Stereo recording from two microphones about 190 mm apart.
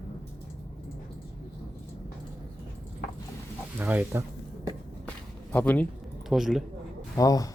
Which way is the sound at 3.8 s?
10° right (ahead or behind).